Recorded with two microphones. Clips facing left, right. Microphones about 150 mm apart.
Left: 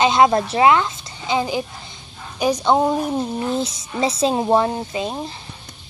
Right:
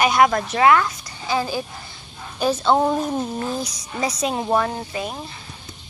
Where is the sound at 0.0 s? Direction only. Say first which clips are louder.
Left 2 dB; 25° left (ahead or behind).